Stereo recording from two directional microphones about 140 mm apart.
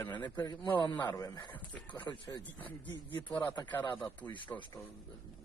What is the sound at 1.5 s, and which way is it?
Speech, 10° left (ahead or behind).